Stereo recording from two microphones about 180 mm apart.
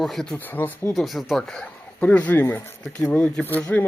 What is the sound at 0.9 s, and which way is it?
Speech, centre (ahead or behind).